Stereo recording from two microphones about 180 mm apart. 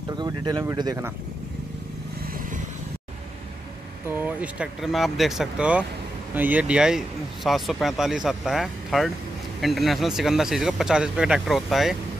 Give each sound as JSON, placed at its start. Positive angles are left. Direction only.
{"t": 0.2, "sound": "speech", "side_deg": -25}
{"t": 4.1, "sound": "speech", "side_deg": -10}